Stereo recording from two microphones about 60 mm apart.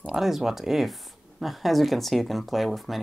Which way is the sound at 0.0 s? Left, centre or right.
Centre.